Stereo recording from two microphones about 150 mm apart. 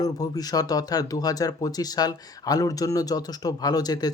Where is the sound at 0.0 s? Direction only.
25° left (ahead or behind).